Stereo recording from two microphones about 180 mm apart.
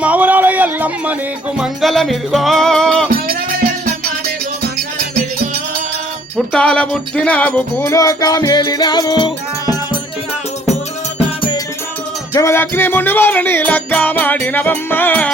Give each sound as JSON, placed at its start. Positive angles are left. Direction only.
{"t": 0.0, "sound": "a sound", "side_deg": -10}
{"t": 1.5, "sound": "music", "side_deg": 0}
{"t": 6.3, "sound": "music", "side_deg": 5}
{"t": 12.3, "sound": "music", "side_deg": 15}